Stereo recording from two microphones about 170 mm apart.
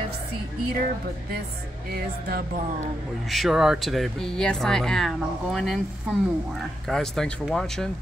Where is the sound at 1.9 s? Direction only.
65° right (ahead or behind).